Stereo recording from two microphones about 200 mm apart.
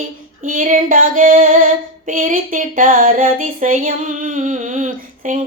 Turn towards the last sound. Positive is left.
turn(degrees=-40)  # may be behind; listen again after turning